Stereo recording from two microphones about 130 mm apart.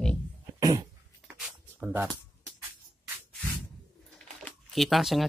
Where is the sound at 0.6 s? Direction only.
30° right (ahead or behind).